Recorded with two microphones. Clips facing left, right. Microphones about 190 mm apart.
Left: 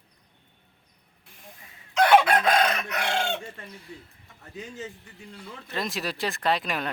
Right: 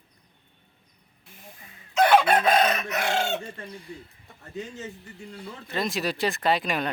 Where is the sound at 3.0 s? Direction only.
45° right (ahead or behind).